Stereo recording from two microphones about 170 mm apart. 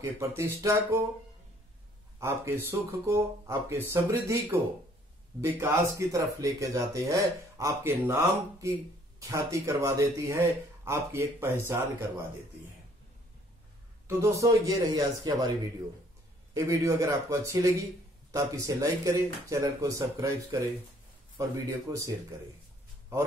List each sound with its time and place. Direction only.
0.0 s speech: 15° right (ahead or behind)
2.1 s speech: 15° right (ahead or behind)
14.0 s speech: 20° right (ahead or behind)
16.5 s speech: 20° right (ahead or behind)